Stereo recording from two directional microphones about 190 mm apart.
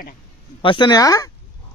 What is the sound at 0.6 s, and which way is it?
Speech, 25° left (ahead or behind).